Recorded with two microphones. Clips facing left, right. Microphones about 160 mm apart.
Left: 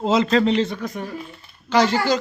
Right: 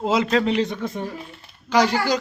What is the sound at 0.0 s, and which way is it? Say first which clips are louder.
Speech: left 2 dB; 10° right (ahead or behind).